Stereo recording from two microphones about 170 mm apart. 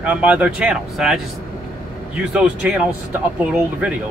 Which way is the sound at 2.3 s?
5° right (ahead or behind).